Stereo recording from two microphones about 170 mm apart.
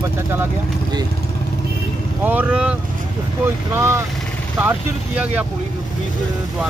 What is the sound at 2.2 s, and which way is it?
Speech, 10° right (ahead or behind).